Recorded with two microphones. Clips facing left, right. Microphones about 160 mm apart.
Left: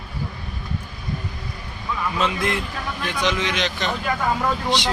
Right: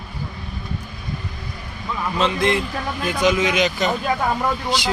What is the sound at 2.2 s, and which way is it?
Speech, 5° left (ahead or behind).